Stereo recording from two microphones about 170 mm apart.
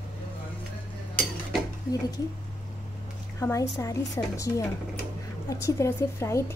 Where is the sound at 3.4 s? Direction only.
20° left (ahead or behind).